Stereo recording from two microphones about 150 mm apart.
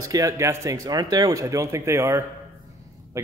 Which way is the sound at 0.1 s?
20° right (ahead or behind).